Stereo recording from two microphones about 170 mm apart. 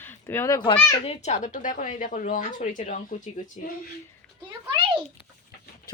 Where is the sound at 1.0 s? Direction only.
45° left (ahead or behind).